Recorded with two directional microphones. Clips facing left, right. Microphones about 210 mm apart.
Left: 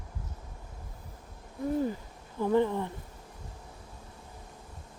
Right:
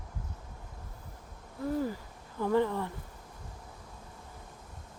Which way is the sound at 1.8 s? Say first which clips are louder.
Left 2 dB; 20° left (ahead or behind).